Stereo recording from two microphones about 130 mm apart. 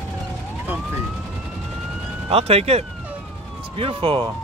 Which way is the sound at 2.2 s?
50° right (ahead or behind).